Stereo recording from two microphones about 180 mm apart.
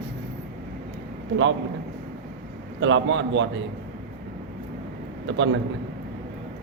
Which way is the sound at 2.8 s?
90° right.